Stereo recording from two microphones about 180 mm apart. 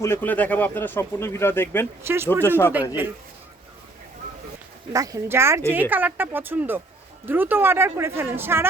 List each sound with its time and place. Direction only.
0.0 s speech: 10° left (ahead or behind)
2.0 s speech: 15° right (ahead or behind)
4.9 s speech: 20° right (ahead or behind)